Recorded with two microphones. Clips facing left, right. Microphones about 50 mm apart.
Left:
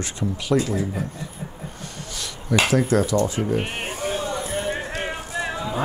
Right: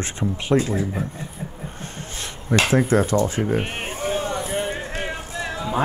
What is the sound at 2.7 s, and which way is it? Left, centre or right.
Speech, right.